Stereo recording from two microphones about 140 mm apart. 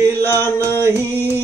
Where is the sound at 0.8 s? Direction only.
15° right (ahead or behind).